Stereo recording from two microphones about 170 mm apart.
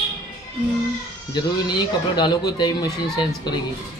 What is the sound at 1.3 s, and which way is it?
Speech, 25° left (ahead or behind).